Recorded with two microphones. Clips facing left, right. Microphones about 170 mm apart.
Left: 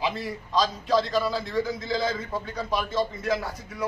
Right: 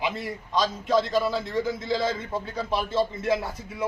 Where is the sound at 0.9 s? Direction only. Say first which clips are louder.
Right 1 dB; 25° right (ahead or behind).